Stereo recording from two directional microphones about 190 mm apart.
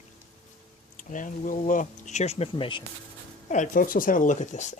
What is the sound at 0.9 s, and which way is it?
Speech, 45° left (ahead or behind).